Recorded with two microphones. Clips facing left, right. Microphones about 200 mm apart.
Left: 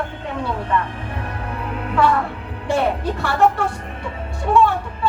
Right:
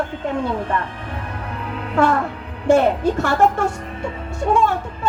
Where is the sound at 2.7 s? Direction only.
50° right (ahead or behind).